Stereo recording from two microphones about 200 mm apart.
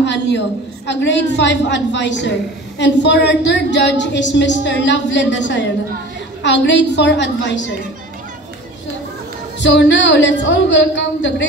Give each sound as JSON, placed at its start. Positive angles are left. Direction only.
{"t": 0.0, "sound": "a woman's voice", "side_deg": 60}
{"t": 9.6, "sound": "a woman's voice", "side_deg": 65}